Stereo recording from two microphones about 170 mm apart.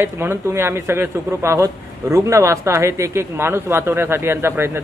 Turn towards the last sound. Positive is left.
turn(degrees=-15)  # may be behind; listen again after turning